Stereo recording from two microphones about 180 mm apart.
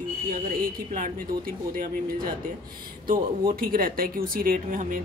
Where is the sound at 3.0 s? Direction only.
55° right (ahead or behind).